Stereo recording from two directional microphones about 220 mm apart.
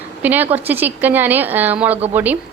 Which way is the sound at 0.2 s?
10° right (ahead or behind).